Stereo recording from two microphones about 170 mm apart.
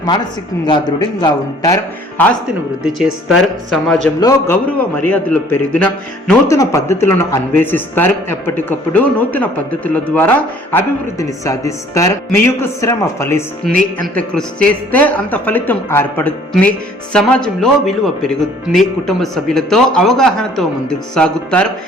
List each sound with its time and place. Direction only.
0.7 s a man's voice: 25° left (ahead or behind)
2.8 s speech: 5° right (ahead or behind)
4.2 s a man's voice: 20° left (ahead or behind)
4.9 s speech: 10° left (ahead or behind)